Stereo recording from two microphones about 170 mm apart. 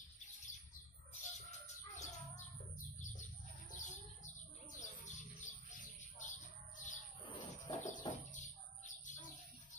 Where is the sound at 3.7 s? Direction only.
45° left (ahead or behind).